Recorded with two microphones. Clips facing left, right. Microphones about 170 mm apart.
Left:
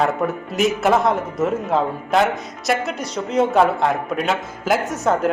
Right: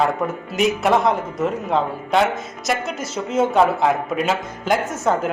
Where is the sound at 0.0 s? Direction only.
Centre (ahead or behind).